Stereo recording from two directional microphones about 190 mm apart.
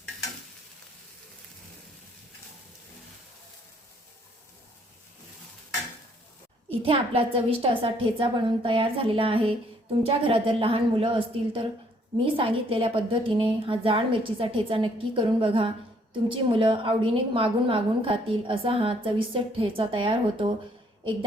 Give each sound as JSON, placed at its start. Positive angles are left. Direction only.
{"t": 6.7, "sound": "a woman's voice", "side_deg": -30}